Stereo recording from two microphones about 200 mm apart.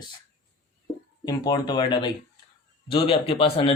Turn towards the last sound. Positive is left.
turn(degrees=30)  # may be behind; listen again after turning